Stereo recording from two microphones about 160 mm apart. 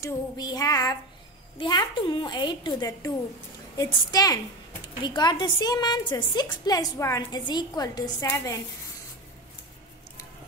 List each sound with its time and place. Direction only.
0.0 s a woman's voice: 25° left (ahead or behind)